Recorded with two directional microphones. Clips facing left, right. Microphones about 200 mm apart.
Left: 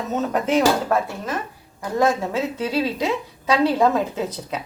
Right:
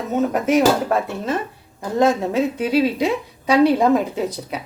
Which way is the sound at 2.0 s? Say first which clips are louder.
Right 3 dB; 20° right (ahead or behind).